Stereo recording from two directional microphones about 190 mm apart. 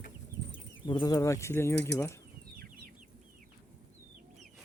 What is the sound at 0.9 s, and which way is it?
Speech, 20° left (ahead or behind).